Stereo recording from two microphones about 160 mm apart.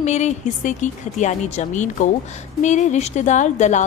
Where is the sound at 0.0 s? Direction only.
45° left (ahead or behind).